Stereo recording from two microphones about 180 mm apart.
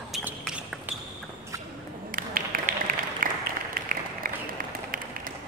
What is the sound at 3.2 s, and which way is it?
Applause, 50° right (ahead or behind).